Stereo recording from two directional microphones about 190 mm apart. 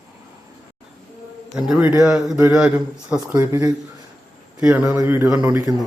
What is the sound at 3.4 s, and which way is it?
Speech, 15° right (ahead or behind).